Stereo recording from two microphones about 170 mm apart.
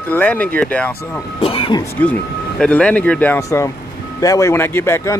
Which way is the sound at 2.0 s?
15° left (ahead or behind).